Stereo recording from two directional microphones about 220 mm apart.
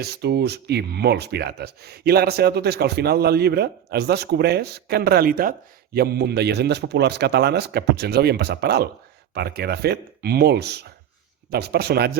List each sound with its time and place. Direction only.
0.0 s speech: 50° right (ahead or behind)